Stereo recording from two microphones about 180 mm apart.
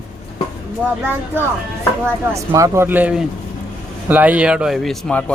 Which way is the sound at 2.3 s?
15° right (ahead or behind).